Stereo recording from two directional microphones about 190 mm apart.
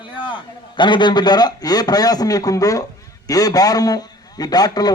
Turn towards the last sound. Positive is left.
turn(degrees=20)  # may be behind; listen again after turning